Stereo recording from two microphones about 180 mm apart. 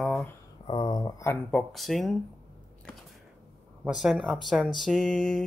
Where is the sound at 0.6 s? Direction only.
25° left (ahead or behind).